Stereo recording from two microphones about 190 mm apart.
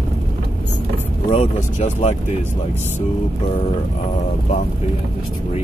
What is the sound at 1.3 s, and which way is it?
Speech, 40° left (ahead or behind).